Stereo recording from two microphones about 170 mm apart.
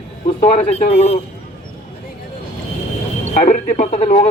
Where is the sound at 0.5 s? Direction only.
40° left (ahead or behind).